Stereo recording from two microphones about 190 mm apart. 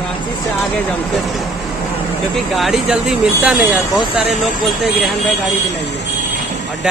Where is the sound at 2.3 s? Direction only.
Centre (ahead or behind).